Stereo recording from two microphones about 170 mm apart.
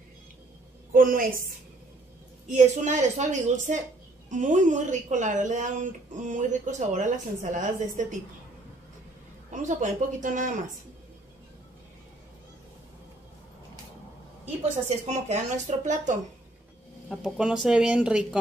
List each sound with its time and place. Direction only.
0.9 s a woman's voice: 55° right (ahead or behind)
2.4 s speech: 45° right (ahead or behind)
9.5 s speech: 45° right (ahead or behind)
14.9 s speech: 40° right (ahead or behind)
17.1 s speech: 5° right (ahead or behind)